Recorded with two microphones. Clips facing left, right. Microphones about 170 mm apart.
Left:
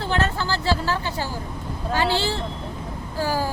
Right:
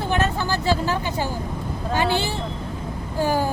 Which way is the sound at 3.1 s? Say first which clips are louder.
Right 3 dB; 20° right (ahead or behind).